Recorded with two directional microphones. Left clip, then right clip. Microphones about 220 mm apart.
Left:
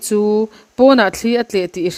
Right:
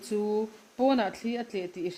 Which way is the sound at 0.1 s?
50° left (ahead or behind).